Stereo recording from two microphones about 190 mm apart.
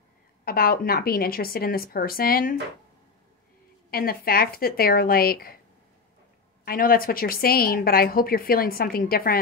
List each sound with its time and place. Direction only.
0.5 s a woman's voice: 50° left (ahead or behind)
3.9 s a woman's voice: 50° left (ahead or behind)
6.6 s a woman's voice: 50° left (ahead or behind)